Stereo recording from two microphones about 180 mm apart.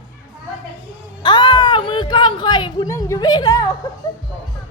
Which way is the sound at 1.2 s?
25° left (ahead or behind).